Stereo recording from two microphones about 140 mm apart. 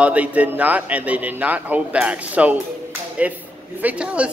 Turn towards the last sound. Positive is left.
turn(degrees=-10)  # may be behind; listen again after turning